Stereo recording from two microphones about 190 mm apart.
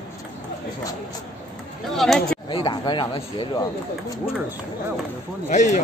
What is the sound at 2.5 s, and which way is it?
Speech, 25° left (ahead or behind).